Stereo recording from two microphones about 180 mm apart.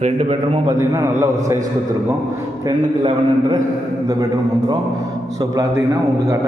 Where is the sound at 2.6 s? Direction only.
25° right (ahead or behind).